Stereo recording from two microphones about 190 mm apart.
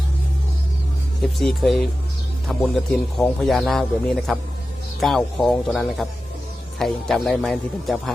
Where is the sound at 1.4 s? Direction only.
Centre (ahead or behind).